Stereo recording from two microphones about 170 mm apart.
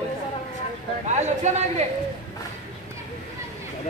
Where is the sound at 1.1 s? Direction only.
40° right (ahead or behind).